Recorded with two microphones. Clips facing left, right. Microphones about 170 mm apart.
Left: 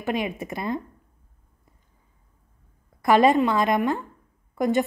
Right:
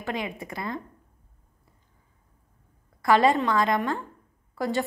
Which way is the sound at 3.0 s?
20° left (ahead or behind).